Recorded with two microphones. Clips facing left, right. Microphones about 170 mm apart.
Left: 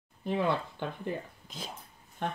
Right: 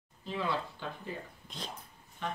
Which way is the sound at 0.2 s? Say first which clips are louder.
Left 5 dB; 55° left (ahead or behind).